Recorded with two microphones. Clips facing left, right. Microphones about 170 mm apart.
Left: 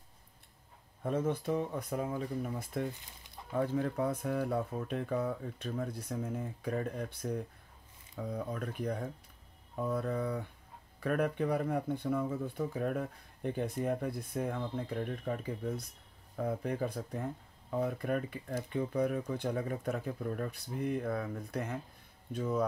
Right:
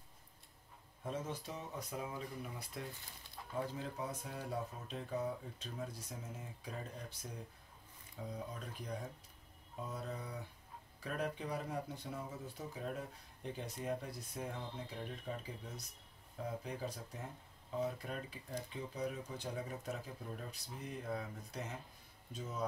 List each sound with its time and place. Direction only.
1.0 s speech: 55° left (ahead or behind)